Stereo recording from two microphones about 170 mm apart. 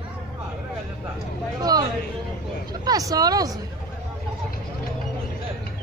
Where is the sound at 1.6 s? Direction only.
25° right (ahead or behind).